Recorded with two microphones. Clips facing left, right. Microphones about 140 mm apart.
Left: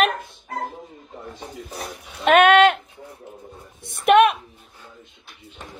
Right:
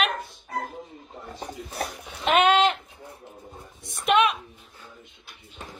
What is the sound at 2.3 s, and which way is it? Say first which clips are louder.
Speech: left 6 dB; 60° left (ahead or behind).